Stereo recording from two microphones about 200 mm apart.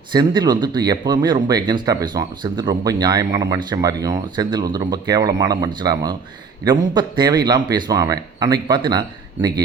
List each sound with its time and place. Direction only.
0.1 s speech: 20° right (ahead or behind)